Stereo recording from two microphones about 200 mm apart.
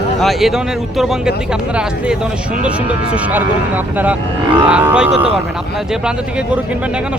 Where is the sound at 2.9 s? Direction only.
10° right (ahead or behind).